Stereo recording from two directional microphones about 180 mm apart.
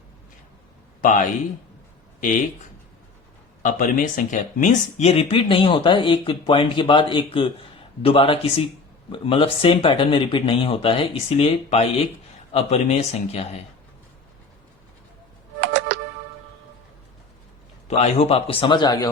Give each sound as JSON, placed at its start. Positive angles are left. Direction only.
{"t": 1.0, "sound": "speech", "side_deg": 45}
{"t": 3.6, "sound": "speech", "side_deg": 45}
{"t": 17.8, "sound": "speech", "side_deg": 35}